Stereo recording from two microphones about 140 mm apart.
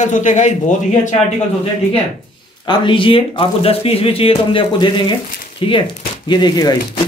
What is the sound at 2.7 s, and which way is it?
Speech, 35° left (ahead or behind).